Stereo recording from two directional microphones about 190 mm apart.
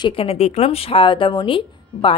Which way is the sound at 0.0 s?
30° left (ahead or behind).